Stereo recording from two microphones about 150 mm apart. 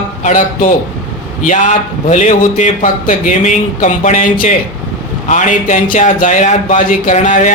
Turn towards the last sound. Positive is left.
turn(degrees=55)  # may be behind; listen again after turning